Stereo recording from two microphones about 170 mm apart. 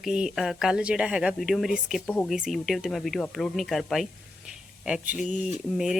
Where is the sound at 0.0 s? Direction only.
5° right (ahead or behind).